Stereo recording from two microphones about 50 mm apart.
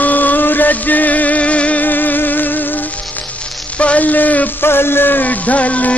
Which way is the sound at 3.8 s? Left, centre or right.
Left.